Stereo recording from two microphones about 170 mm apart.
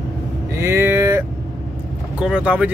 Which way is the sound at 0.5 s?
15° right (ahead or behind).